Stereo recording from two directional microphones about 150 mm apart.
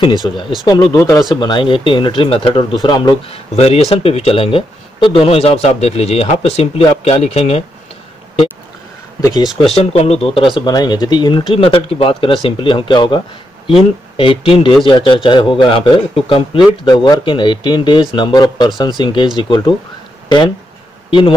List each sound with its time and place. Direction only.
0.2 s speech: 25° left (ahead or behind)
3.5 s speech: 45° left (ahead or behind)
9.2 s speech: 25° left (ahead or behind)
9.7 s speech: 45° left (ahead or behind)